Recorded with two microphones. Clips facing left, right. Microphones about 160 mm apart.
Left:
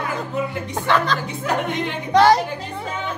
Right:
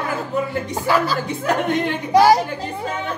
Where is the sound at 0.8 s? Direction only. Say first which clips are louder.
Even; 5° right (ahead or behind).